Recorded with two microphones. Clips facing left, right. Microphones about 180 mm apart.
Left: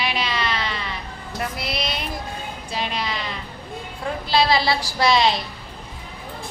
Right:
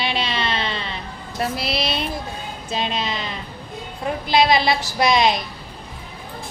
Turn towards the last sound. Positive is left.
turn(degrees=-20)  # may be behind; listen again after turning